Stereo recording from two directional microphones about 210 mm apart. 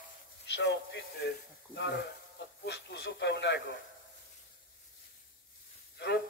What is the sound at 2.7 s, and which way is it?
A man's voice, 55° left (ahead or behind).